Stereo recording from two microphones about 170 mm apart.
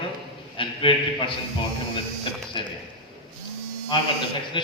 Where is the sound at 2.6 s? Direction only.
25° left (ahead or behind).